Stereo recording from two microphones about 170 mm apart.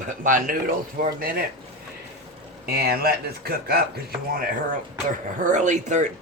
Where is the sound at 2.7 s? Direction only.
65° right (ahead or behind).